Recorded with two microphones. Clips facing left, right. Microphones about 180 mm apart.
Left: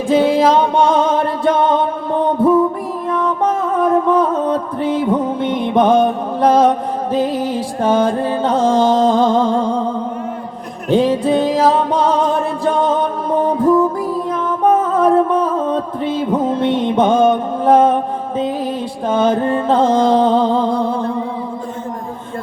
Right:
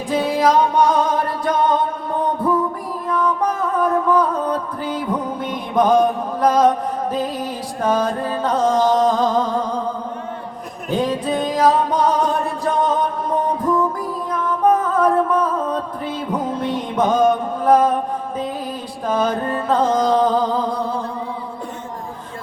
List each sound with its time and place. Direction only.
0.1 s music: 25° left (ahead or behind)
10.9 s music: 25° left (ahead or behind)
19.0 s music: 25° left (ahead or behind)